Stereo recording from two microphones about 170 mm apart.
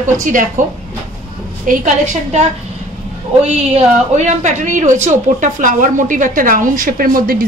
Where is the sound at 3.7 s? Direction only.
45° right (ahead or behind).